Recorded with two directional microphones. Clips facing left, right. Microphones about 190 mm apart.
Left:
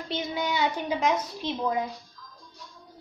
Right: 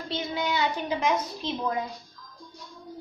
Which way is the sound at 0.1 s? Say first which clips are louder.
Even; 15° left (ahead or behind).